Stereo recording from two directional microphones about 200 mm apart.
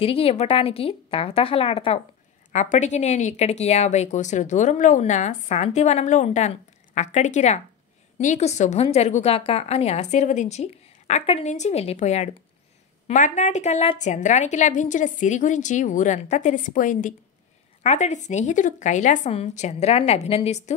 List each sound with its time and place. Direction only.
0.0 s a woman's voice: 30° left (ahead or behind)